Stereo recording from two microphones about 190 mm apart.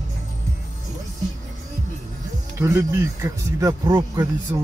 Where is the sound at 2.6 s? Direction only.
15° right (ahead or behind).